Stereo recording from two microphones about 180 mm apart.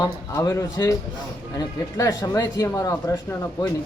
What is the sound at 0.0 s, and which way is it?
Speech, 15° left (ahead or behind).